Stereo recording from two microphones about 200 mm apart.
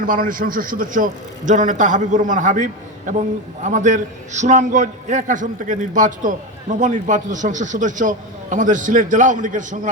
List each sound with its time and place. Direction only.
0.0 s a man's voice: 45° right (ahead or behind)